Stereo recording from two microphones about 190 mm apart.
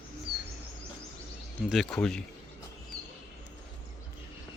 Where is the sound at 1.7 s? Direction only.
Centre (ahead or behind).